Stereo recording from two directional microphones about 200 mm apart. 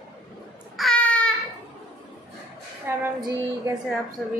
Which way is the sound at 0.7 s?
5° left (ahead or behind).